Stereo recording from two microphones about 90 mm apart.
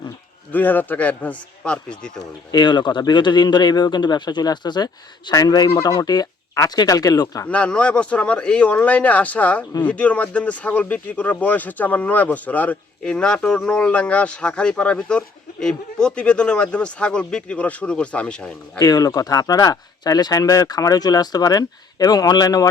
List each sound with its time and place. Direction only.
0.5 s speech: 20° left (ahead or behind)
2.5 s speech: 55° left (ahead or behind)
5.3 s speech: 45° left (ahead or behind)
7.4 s speech: 15° left (ahead or behind)
18.8 s speech: 45° left (ahead or behind)